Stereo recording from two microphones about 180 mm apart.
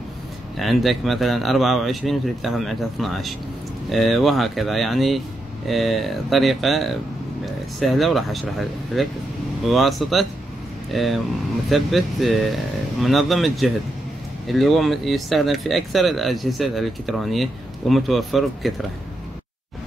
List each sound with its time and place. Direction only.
0.6 s speech: centre (ahead or behind)